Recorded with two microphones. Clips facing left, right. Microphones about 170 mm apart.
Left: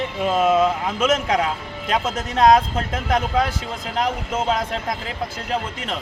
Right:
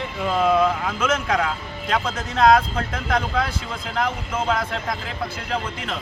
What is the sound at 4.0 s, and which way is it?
Speech, 20° left (ahead or behind).